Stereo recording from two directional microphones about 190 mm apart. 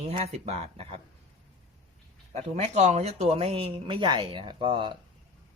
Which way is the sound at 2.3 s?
35° right (ahead or behind).